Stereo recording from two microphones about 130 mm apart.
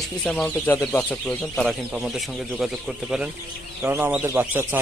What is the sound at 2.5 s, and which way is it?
Speech, 5° right (ahead or behind).